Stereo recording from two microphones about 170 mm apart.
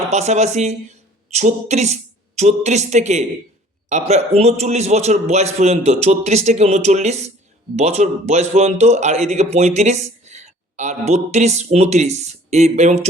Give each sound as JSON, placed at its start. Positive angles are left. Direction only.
{"t": 0.1, "sound": "speech", "side_deg": -40}